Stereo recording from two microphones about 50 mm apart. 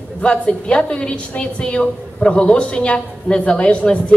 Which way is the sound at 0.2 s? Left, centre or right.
Left.